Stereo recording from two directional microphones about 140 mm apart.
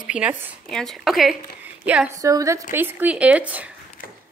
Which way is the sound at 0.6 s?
Centre (ahead or behind).